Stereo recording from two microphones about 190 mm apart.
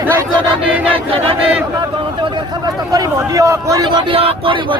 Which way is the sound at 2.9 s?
20° right (ahead or behind).